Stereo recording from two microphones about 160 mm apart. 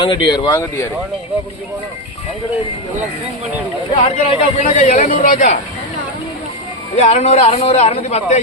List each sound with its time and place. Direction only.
0.0 s speech: 30° left (ahead or behind)
3.9 s speech: 40° left (ahead or behind)
6.9 s speech: 45° left (ahead or behind)